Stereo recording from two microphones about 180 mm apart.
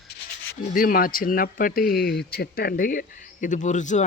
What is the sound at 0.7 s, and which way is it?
Speech, 50° left (ahead or behind).